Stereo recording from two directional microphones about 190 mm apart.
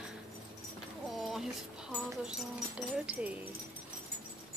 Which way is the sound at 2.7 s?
5° right (ahead or behind).